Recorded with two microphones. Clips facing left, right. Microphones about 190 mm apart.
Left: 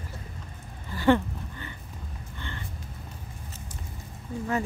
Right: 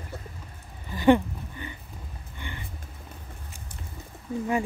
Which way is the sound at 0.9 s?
15° right (ahead or behind).